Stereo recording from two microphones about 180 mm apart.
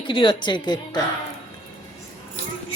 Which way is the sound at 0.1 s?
25° left (ahead or behind).